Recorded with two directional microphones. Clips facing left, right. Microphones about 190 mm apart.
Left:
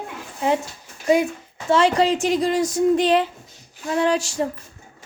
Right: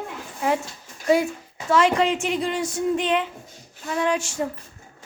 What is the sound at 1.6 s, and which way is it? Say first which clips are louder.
Speech: left 2 dB; 30° left (ahead or behind).